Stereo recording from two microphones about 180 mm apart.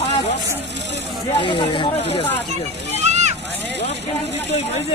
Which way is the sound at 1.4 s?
25° left (ahead or behind).